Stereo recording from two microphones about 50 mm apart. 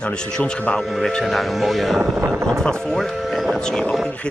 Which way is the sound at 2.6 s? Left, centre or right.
Centre.